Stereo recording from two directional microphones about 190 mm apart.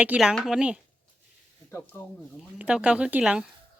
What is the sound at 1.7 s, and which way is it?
Speech, 10° left (ahead or behind).